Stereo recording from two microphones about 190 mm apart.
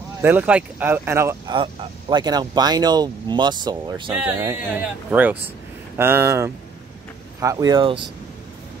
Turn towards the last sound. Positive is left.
turn(degrees=-25)  # may be behind; listen again after turning